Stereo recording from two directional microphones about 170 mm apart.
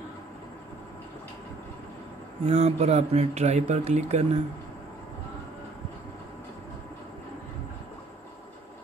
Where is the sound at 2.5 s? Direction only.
40° right (ahead or behind).